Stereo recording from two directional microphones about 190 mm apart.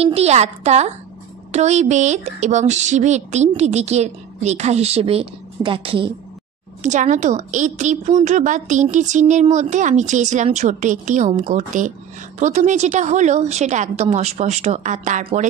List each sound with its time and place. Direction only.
0.0 s a woman's voice: 35° right (ahead or behind)
6.8 s a woman's voice: 40° right (ahead or behind)